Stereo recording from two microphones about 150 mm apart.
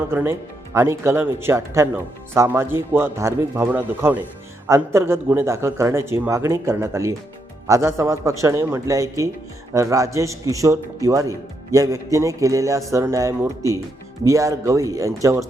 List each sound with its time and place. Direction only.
0.1 s a man's voice: 15° right (ahead or behind)